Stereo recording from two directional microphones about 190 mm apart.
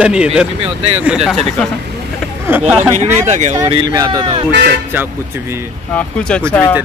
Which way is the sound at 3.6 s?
25° right (ahead or behind).